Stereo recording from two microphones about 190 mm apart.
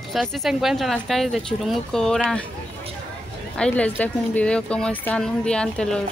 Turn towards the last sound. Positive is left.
turn(degrees=5)  # may be behind; listen again after turning